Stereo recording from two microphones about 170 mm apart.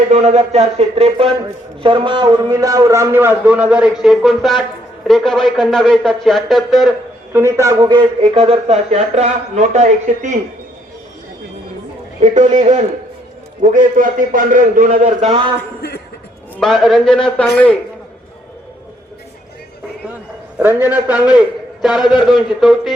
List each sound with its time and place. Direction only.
0.1 s a man's voice: 40° right (ahead or behind); by 6.9 s centre (ahead or behind)
7.3 s a man's voice: 15° right (ahead or behind); by 10.3 s 45° right (ahead or behind)
12.2 s a man's voice: 45° right (ahead or behind)
16.6 s a man's voice: centre (ahead or behind)
20.6 s a man's voice: 10° right (ahead or behind)